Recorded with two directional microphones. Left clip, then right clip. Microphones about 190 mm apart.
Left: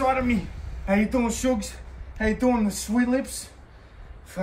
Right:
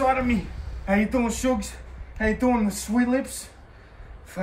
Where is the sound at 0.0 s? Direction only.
Centre (ahead or behind).